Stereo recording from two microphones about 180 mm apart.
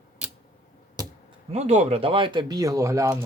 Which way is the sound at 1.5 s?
40° right (ahead or behind).